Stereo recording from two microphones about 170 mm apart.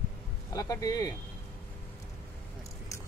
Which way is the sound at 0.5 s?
20° left (ahead or behind).